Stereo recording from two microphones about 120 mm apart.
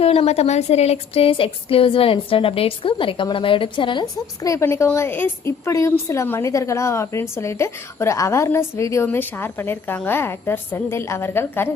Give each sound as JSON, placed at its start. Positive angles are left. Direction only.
{"t": 0.0, "sound": "a woman's voice", "side_deg": 55}
{"t": 4.4, "sound": "a woman's voice", "side_deg": 25}